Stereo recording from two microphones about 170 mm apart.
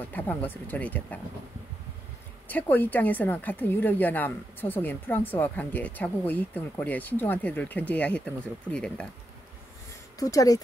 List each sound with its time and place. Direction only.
0.1 s speech: 10° left (ahead or behind)
2.4 s speech: 10° left (ahead or behind)
10.1 s speech: 20° left (ahead or behind)